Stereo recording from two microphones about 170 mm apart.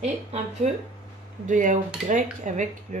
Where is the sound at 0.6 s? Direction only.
40° right (ahead or behind).